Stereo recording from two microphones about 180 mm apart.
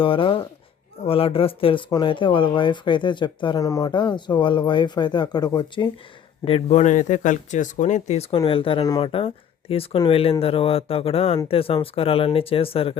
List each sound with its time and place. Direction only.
0.0 s speech: 30° left (ahead or behind)